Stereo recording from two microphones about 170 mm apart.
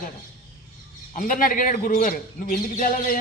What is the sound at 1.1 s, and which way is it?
A man's voice, 55° left (ahead or behind).